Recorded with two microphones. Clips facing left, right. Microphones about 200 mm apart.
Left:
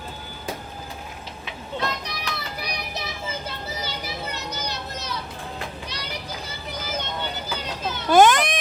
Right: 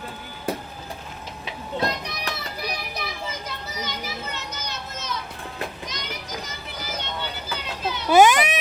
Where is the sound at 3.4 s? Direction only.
30° left (ahead or behind).